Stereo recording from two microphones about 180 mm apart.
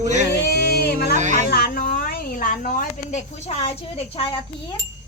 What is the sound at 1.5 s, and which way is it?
Speech, 55° left (ahead or behind).